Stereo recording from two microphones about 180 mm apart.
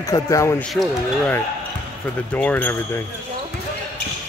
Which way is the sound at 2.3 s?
10° left (ahead or behind).